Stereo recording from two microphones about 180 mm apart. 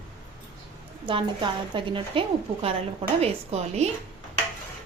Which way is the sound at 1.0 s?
25° right (ahead or behind).